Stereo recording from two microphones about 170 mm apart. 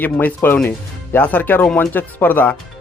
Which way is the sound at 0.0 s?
10° left (ahead or behind).